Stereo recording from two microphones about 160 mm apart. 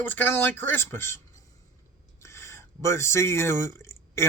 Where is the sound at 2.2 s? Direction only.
15° left (ahead or behind).